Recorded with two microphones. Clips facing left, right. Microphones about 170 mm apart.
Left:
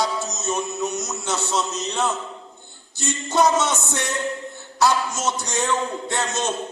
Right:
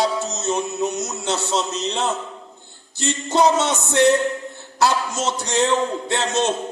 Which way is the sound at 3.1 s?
30° right (ahead or behind).